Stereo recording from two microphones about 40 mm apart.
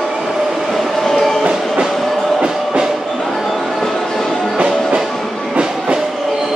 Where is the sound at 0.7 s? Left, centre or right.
Centre.